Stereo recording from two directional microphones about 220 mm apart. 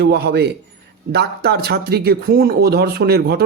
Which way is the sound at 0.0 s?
45° right (ahead or behind).